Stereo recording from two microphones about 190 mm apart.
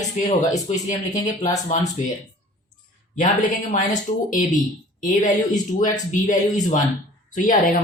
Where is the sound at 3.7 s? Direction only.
40° left (ahead or behind).